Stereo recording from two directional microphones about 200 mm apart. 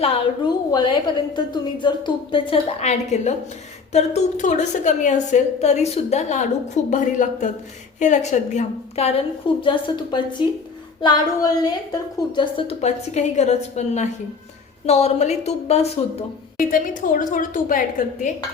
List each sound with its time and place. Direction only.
0.0 s a woman's voice: 25° left (ahead or behind)